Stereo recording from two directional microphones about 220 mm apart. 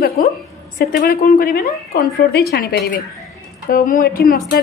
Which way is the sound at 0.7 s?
40° left (ahead or behind).